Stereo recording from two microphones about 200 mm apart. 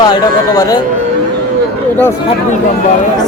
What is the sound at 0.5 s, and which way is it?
Speech, 20° left (ahead or behind).